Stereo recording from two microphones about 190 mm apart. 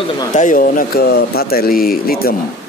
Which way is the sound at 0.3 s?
45° left (ahead or behind).